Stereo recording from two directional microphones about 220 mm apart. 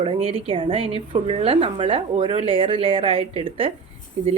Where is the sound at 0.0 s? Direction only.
25° right (ahead or behind).